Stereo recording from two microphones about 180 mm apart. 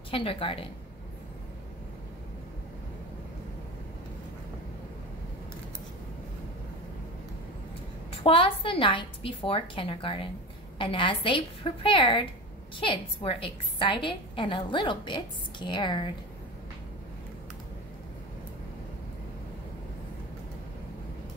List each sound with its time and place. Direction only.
0.1 s a woman's voice: 30° left (ahead or behind)
8.2 s a woman's voice: 30° left (ahead or behind)